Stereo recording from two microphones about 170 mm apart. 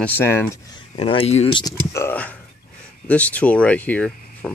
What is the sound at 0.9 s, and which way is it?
Speech, 35° left (ahead or behind).